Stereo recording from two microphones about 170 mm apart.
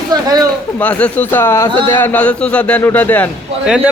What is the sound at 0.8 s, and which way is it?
A man's voice, 10° left (ahead or behind).